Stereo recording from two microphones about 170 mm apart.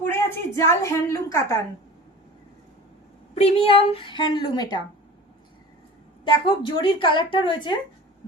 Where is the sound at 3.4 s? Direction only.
35° left (ahead or behind).